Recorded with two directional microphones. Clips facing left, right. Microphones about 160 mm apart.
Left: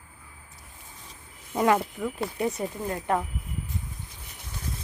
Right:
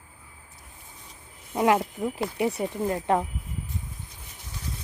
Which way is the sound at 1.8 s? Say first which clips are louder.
Right 2 dB; 20° right (ahead or behind).